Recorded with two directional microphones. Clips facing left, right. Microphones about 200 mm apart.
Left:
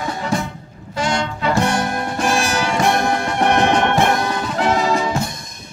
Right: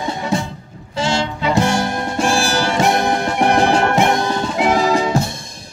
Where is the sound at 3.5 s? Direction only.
30° right (ahead or behind).